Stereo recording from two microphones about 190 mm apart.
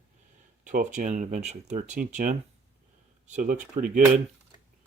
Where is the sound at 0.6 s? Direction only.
40° right (ahead or behind).